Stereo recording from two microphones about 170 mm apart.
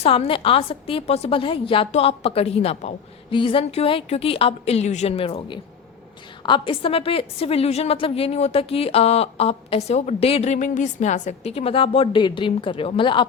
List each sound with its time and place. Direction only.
0.0 s a woman's voice: 35° left (ahead or behind)